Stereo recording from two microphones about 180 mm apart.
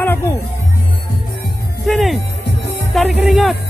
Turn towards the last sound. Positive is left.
turn(degrees=0)  # may be behind; listen again after turning